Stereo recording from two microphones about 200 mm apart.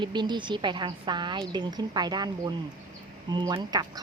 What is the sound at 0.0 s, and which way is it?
A woman's voice, 20° right (ahead or behind).